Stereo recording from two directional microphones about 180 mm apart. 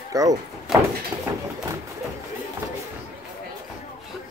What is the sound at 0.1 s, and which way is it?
Speech, 20° right (ahead or behind).